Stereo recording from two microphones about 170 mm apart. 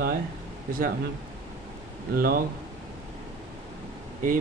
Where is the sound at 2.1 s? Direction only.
60° right (ahead or behind).